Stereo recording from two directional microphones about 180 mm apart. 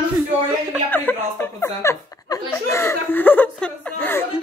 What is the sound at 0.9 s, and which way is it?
Speech, 10° left (ahead or behind).